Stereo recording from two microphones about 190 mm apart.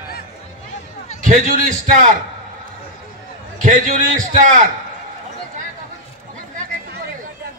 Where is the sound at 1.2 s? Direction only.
45° right (ahead or behind).